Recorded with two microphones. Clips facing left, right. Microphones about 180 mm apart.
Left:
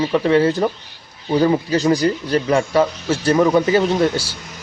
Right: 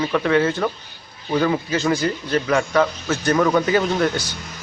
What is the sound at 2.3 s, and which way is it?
Speech, 25° left (ahead or behind).